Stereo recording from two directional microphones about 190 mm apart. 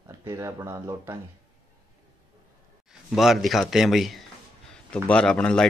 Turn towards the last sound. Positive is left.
turn(degrees=5)  # may be behind; listen again after turning